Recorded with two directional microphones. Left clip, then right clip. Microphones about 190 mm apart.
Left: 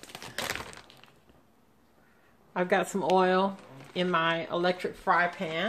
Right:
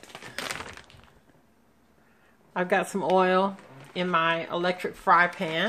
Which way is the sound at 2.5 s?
5° right (ahead or behind).